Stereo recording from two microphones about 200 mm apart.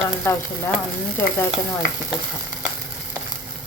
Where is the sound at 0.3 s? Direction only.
10° left (ahead or behind).